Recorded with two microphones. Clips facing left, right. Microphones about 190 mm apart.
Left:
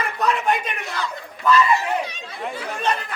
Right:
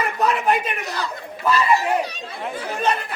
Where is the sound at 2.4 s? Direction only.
5° right (ahead or behind).